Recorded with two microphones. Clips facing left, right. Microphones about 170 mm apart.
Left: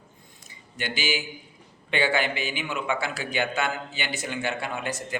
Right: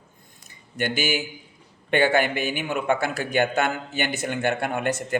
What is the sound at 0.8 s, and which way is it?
Speech, 55° right (ahead or behind).